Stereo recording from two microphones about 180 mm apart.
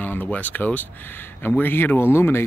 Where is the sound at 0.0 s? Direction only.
10° left (ahead or behind).